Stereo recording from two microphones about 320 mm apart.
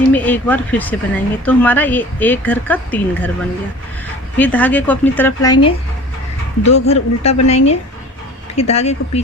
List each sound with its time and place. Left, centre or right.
0.1 s speech: centre
4.4 s speech: centre